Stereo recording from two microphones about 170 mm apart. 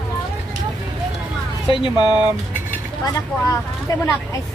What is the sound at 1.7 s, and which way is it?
Speech, 30° left (ahead or behind).